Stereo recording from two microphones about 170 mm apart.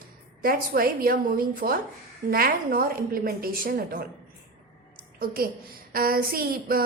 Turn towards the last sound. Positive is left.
turn(degrees=-60)  # may be behind; listen again after turning